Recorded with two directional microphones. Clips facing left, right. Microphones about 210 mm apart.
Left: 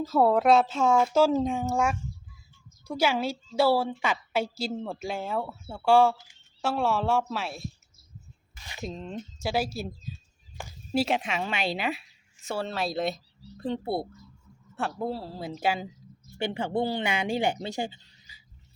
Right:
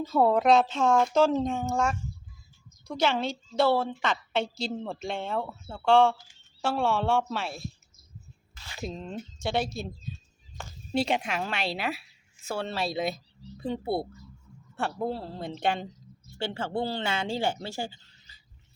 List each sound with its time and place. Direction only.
0.0 s a woman's voice: 5° left (ahead or behind)
8.5 s a sound: 15° left (ahead or behind)
8.8 s speech: centre (ahead or behind)
16.4 s a woman's voice: 15° left (ahead or behind)